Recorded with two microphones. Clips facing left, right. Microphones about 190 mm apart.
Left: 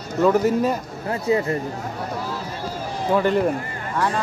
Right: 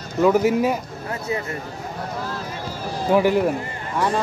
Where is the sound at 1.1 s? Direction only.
30° left (ahead or behind).